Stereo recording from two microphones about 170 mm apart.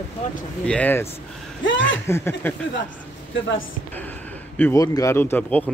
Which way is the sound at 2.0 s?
15° left (ahead or behind).